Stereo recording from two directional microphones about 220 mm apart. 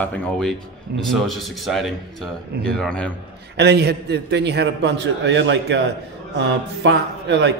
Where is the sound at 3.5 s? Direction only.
50° right (ahead or behind).